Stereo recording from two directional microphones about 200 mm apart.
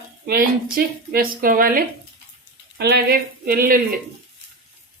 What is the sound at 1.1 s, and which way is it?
Speech, 45° right (ahead or behind).